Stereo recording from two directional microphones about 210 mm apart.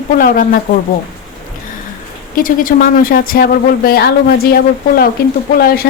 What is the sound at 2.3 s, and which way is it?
A woman's voice, 40° left (ahead or behind).